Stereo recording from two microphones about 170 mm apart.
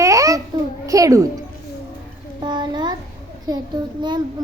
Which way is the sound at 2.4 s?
25° right (ahead or behind).